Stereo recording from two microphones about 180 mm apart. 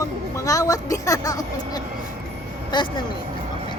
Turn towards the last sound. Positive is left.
turn(degrees=25)  # may be behind; listen again after turning